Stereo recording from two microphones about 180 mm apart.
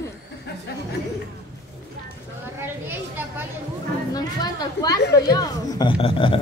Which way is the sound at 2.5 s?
10° right (ahead or behind).